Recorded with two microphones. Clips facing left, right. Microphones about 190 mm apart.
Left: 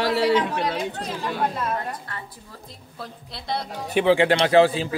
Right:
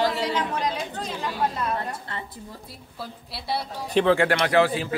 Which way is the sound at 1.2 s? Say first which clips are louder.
Left 1 dB; centre (ahead or behind).